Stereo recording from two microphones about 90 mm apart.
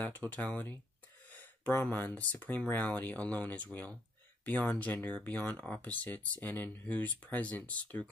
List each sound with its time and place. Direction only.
0.0 s speech: 20° left (ahead or behind)